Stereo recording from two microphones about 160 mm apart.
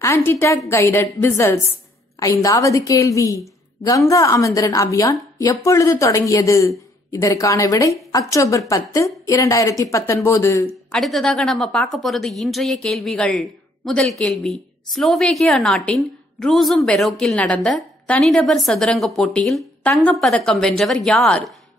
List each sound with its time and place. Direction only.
0.0 s a woman's voice: 15° left (ahead or behind)
10.9 s a woman's voice: centre (ahead or behind)